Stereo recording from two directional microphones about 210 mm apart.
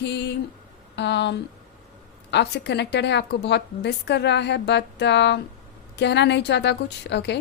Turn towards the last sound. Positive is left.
turn(degrees=55)  # may be behind; listen again after turning